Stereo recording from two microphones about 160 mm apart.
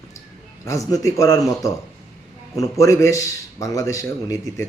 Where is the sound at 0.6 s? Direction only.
20° left (ahead or behind).